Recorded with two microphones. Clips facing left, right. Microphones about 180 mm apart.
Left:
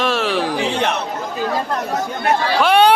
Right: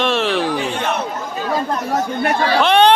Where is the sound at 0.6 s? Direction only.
75° left (ahead or behind).